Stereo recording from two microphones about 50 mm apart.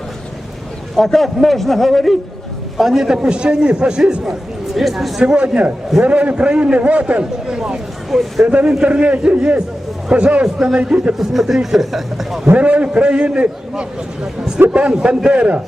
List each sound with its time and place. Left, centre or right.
0.9 s a man's voice: centre
2.7 s a man's voice: centre
5.2 s a man's voice: right
8.4 s a man's voice: right
11.2 s a man's voice: centre
12.5 s a man's voice: right